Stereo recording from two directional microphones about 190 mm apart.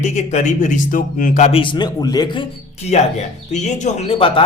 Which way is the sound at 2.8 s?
35° left (ahead or behind).